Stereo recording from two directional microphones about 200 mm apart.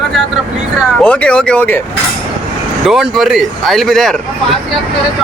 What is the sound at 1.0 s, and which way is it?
Speech, 5° left (ahead or behind).